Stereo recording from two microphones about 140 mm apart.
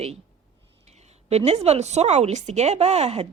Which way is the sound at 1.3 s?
50° right (ahead or behind).